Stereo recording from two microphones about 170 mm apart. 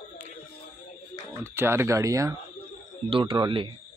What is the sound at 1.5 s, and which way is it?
Speech, 15° right (ahead or behind).